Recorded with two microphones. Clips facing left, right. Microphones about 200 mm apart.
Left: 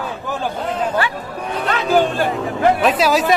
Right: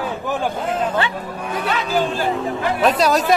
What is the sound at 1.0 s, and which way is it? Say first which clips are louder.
Speech: left 1 dB; 25° right (ahead or behind).